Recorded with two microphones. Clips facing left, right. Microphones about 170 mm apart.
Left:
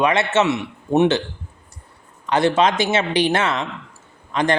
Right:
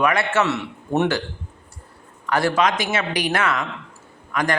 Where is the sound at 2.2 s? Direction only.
20° left (ahead or behind).